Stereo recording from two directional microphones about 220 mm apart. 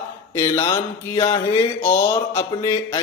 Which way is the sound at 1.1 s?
25° left (ahead or behind).